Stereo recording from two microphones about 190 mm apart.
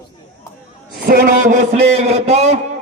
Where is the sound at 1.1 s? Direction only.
45° right (ahead or behind).